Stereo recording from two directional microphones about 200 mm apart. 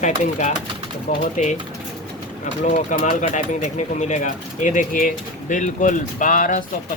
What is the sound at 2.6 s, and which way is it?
Speech, 40° left (ahead or behind).